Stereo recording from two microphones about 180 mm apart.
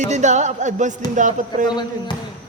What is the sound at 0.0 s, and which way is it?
Speech, 40° right (ahead or behind).